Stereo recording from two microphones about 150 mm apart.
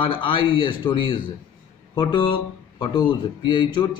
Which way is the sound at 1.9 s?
30° left (ahead or behind).